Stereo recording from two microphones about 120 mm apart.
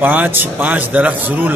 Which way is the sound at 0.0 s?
15° right (ahead or behind).